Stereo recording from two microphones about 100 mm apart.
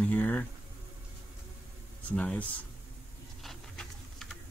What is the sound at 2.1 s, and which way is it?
Speech, 10° left (ahead or behind).